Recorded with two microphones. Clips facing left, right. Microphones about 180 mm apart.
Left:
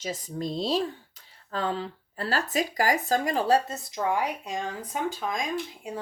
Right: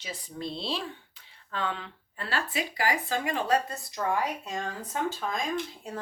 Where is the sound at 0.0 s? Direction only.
40° left (ahead or behind).